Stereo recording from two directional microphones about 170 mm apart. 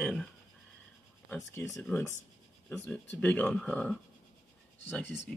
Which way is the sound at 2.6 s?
10° left (ahead or behind).